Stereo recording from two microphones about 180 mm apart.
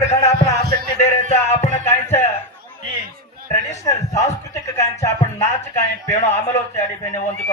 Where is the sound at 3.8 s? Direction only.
20° left (ahead or behind).